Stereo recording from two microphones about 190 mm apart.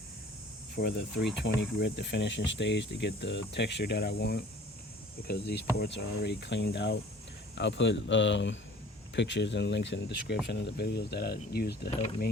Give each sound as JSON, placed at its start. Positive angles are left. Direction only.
{"t": 0.8, "sound": "speech", "side_deg": 60}